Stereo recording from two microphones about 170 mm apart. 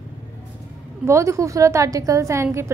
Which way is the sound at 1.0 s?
15° right (ahead or behind).